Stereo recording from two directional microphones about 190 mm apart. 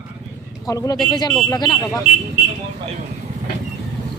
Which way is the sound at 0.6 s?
20° left (ahead or behind).